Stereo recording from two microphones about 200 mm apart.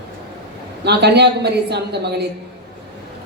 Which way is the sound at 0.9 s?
55° right (ahead or behind).